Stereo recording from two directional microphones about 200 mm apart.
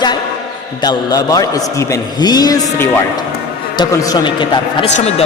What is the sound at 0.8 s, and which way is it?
A man's voice, 20° left (ahead or behind).